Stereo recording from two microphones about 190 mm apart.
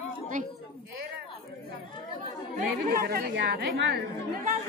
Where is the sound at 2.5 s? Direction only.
50° right (ahead or behind).